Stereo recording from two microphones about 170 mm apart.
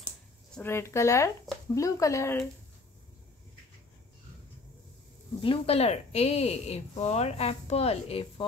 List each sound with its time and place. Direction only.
0.6 s speech: 15° left (ahead or behind)
5.4 s speech: 35° left (ahead or behind)